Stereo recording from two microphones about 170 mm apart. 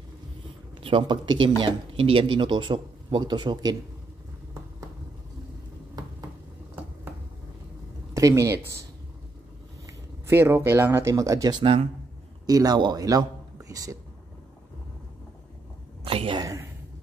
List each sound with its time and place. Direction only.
0.8 s speech: 30° right (ahead or behind)
8.1 s speech: 20° right (ahead or behind)
9.8 s speech: 15° right (ahead or behind)
11.6 s speech: 35° right (ahead or behind)
12.4 s speech: 25° right (ahead or behind)
16.0 s a sound: 35° right (ahead or behind)
16.3 s speech: 20° right (ahead or behind)